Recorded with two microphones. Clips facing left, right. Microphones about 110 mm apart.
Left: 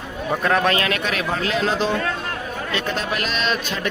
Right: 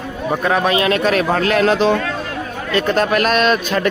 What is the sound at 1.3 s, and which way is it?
Speech, 60° right (ahead or behind).